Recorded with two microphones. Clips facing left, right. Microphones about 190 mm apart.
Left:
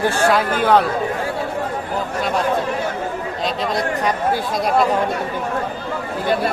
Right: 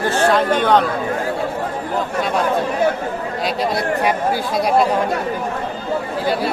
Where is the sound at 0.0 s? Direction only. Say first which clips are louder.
Right 1 dB; 5° left (ahead or behind).